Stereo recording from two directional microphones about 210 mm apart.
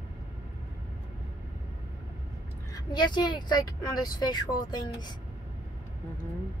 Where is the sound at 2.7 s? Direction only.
20° left (ahead or behind).